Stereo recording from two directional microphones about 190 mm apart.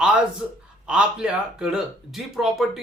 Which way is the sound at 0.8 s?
5° right (ahead or behind).